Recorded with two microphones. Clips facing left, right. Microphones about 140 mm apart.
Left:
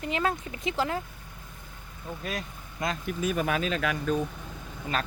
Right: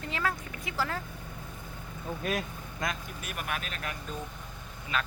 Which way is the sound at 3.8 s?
90° left.